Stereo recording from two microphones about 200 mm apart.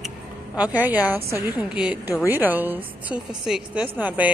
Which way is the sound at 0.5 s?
10° right (ahead or behind).